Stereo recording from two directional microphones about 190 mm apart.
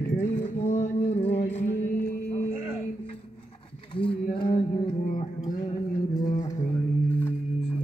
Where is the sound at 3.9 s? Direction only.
25° left (ahead or behind).